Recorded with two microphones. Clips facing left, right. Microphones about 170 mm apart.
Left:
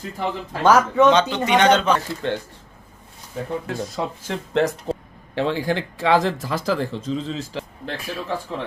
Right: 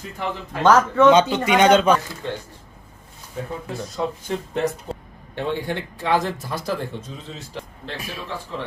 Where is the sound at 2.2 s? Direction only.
75° left (ahead or behind).